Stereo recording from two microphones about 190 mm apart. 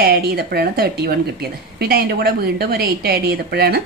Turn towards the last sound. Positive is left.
turn(degrees=-55)  # may be behind; listen again after turning